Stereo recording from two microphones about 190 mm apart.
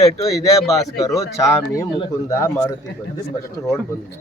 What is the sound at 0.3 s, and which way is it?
Speech, centre (ahead or behind).